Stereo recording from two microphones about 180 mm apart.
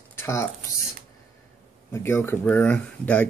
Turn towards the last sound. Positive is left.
turn(degrees=5)  # may be behind; listen again after turning